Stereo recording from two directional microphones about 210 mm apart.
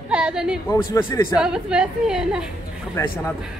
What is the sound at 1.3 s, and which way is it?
Speech, 5° right (ahead or behind).